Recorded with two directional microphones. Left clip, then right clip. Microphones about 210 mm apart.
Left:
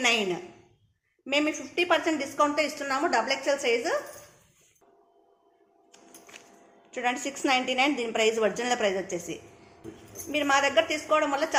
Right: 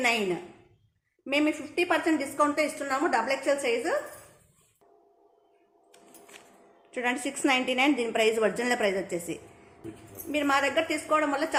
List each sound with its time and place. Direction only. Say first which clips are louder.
1.2 s a woman's voice: even; 20° right (ahead or behind)
6.9 s a woman's voice: left 1 dB; 20° right (ahead or behind)